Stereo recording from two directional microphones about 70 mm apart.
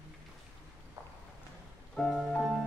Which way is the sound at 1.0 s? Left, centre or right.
Right.